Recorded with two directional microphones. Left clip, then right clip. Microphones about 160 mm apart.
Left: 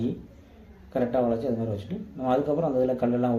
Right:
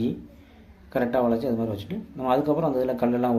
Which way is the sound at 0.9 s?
25° right (ahead or behind).